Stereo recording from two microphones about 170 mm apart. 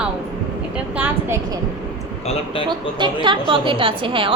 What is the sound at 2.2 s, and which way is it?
Speech, 35° left (ahead or behind).